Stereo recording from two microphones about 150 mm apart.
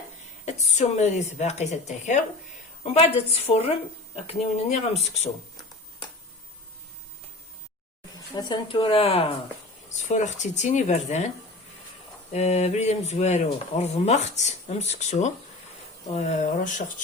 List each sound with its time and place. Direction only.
0.4 s speech: 50° left (ahead or behind)
8.4 s speech: 30° left (ahead or behind)
10.0 s speech: 55° left (ahead or behind)
12.3 s speech: 50° left (ahead or behind)